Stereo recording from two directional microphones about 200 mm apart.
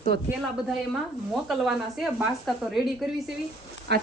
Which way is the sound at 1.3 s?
Centre (ahead or behind).